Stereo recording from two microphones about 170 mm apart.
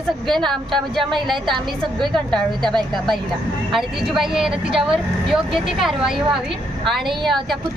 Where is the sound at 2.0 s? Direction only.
Centre (ahead or behind).